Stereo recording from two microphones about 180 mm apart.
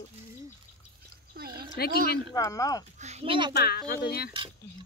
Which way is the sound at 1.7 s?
60° left (ahead or behind).